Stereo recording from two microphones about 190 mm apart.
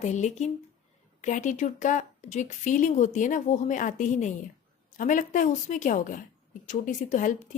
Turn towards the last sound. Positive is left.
turn(degrees=40)  # may be behind; listen again after turning